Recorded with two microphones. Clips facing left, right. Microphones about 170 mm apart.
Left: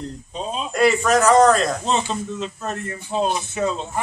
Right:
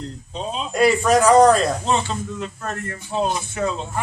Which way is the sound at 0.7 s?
10° right (ahead or behind).